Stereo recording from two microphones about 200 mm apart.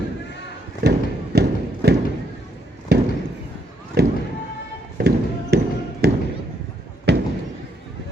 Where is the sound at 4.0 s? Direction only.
55° right (ahead or behind).